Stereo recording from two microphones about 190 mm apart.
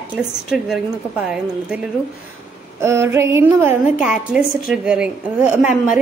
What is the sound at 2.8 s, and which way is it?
A woman's voice, 15° right (ahead or behind).